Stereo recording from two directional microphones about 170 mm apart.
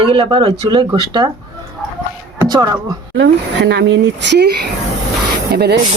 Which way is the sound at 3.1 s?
90° right.